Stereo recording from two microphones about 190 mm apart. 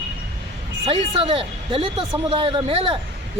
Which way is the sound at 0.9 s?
30° right (ahead or behind).